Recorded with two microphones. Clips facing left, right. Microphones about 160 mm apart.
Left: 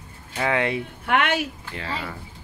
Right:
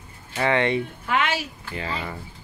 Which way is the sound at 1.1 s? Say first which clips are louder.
Left 3 dB; 60° left (ahead or behind).